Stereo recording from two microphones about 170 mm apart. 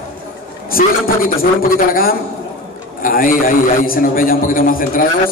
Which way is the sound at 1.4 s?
60° left (ahead or behind).